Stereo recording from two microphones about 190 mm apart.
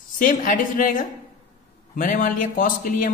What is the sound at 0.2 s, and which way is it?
Speech, 45° left (ahead or behind).